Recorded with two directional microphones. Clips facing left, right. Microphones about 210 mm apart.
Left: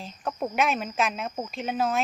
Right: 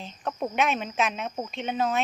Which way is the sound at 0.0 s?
Centre (ahead or behind).